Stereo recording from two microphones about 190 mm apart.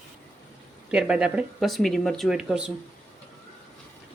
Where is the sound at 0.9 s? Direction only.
5° right (ahead or behind).